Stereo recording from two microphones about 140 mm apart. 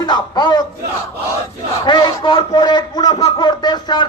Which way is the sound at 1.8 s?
35° left (ahead or behind).